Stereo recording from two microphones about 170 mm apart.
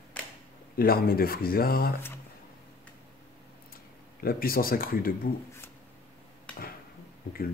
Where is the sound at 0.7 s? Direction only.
60° left (ahead or behind).